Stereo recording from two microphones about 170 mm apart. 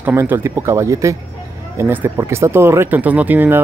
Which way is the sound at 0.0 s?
15° right (ahead or behind).